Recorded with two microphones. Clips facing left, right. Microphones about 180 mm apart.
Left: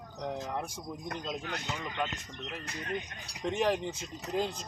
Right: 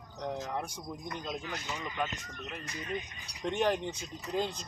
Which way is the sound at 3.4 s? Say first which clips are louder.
Even; centre (ahead or behind).